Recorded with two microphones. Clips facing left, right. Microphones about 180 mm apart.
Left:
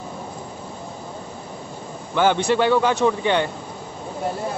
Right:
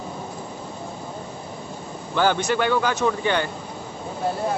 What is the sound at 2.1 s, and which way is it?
Speech, 20° left (ahead or behind).